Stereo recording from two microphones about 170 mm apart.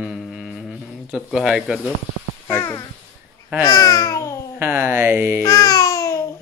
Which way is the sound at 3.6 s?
20° left (ahead or behind).